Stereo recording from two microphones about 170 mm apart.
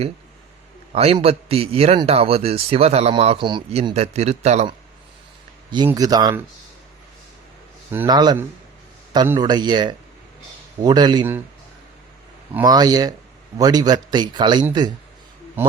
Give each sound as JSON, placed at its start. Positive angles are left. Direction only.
{"t": 0.9, "sound": "a man's voice", "side_deg": -35}
{"t": 5.7, "sound": "a man's voice", "side_deg": -25}
{"t": 8.0, "sound": "a man's voice", "side_deg": -25}
{"t": 12.6, "sound": "a man's voice", "side_deg": -25}
{"t": 15.6, "sound": "a man's voice", "side_deg": -10}